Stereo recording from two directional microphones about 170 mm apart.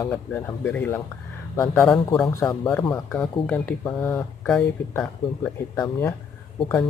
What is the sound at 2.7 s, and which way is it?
Speech, 5° left (ahead or behind).